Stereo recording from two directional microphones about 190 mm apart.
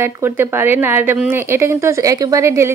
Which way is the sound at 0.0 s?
10° right (ahead or behind).